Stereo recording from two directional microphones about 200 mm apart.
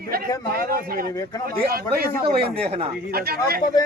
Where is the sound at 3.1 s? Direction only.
50° right (ahead or behind).